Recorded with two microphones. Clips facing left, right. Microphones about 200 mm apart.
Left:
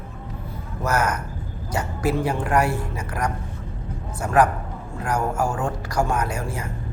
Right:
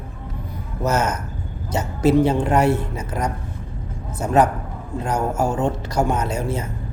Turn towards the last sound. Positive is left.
turn(degrees=-25)  # may be behind; listen again after turning